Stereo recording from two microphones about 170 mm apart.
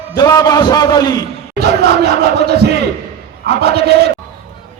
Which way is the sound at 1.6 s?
70° right (ahead or behind).